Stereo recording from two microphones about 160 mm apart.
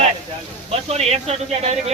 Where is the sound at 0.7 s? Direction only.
40° right (ahead or behind).